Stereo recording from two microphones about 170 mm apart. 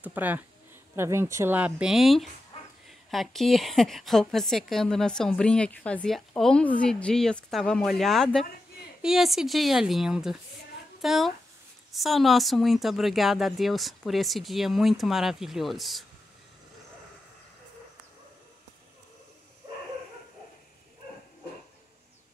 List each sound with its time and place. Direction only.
0.0 s speech: 10° right (ahead or behind)
2.5 s dog: 35° left (ahead or behind)
2.9 s a woman's voice: centre (ahead or behind)